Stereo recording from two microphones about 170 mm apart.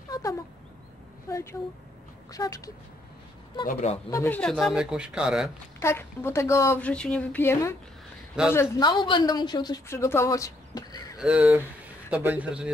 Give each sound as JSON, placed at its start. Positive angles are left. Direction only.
{"t": 0.1, "sound": "a sound", "side_deg": 20}
{"t": 1.3, "sound": "a woman's voice", "side_deg": 15}
{"t": 3.6, "sound": "a man's voice", "side_deg": 40}
{"t": 4.1, "sound": "speech", "side_deg": 10}
{"t": 5.8, "sound": "speech", "side_deg": 15}
{"t": 8.8, "sound": "a woman's voice", "side_deg": 30}
{"t": 11.1, "sound": "speech", "side_deg": -5}